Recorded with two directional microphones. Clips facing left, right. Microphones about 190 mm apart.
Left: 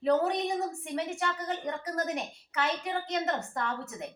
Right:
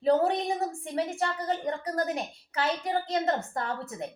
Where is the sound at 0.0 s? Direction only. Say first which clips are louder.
Right 2 dB; 30° right (ahead or behind).